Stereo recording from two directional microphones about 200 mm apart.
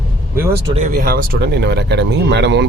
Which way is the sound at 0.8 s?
40° right (ahead or behind).